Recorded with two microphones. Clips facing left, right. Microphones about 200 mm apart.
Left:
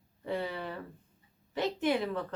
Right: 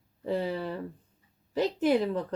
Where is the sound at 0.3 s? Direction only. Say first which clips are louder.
Right 5 dB; 40° right (ahead or behind).